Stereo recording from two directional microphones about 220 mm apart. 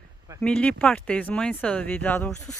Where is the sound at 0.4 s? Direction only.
5° left (ahead or behind).